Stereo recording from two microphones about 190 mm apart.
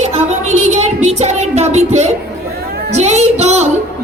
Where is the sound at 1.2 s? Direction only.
35° right (ahead or behind).